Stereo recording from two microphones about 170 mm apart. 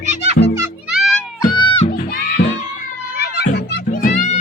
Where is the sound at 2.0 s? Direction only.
65° left (ahead or behind).